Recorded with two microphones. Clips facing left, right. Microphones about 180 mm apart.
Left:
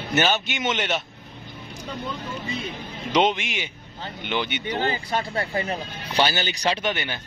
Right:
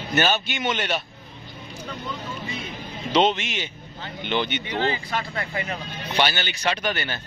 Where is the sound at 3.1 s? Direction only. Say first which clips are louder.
Right 1 dB; 10° left (ahead or behind).